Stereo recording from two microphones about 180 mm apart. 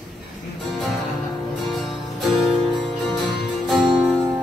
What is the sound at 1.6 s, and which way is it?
Music, centre (ahead or behind).